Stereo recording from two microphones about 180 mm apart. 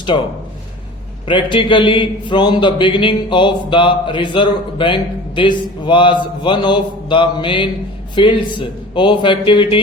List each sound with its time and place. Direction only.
1.3 s a man's voice: 25° left (ahead or behind)